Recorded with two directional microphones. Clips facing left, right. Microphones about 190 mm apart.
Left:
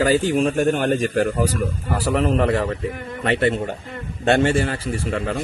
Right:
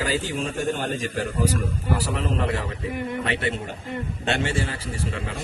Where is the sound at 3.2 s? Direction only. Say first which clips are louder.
Left 7 dB; 55° left (ahead or behind).